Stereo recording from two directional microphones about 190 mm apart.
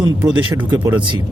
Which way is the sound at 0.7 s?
10° right (ahead or behind).